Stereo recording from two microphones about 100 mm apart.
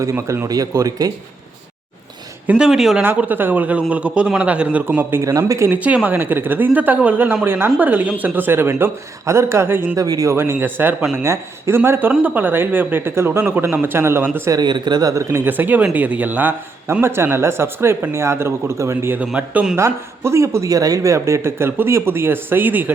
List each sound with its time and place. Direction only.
0.0 s a man's voice: 30° right (ahead or behind)
2.5 s a man's voice: 5° right (ahead or behind)
3.0 s a man's voice: 20° right (ahead or behind)
5.2 s a man's voice: 35° right (ahead or behind)
5.7 s a man's voice: 15° right (ahead or behind)
10.0 s a man's voice: 35° right (ahead or behind)
10.3 s speech: 25° right (ahead or behind)
14.5 s speech: 45° right (ahead or behind)
15.1 s speech: 25° right (ahead or behind)
19.2 s a man's voice: 15° right (ahead or behind)
19.8 s speech: 30° right (ahead or behind)